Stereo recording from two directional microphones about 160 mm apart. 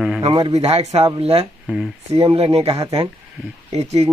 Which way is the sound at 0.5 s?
40° right (ahead or behind).